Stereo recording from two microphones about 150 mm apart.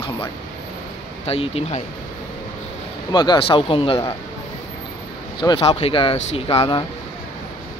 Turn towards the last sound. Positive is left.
turn(degrees=35)  # may be behind; listen again after turning